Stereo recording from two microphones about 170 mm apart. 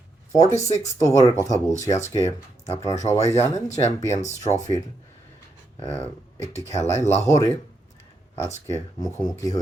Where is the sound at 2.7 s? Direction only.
20° left (ahead or behind).